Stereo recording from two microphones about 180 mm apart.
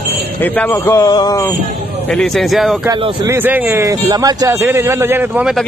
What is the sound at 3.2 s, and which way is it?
Speech, 10° right (ahead or behind).